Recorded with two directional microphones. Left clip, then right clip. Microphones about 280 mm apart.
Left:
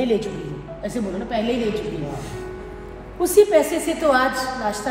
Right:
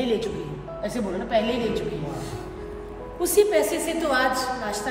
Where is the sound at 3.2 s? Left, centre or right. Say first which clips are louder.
Left 5 dB; centre.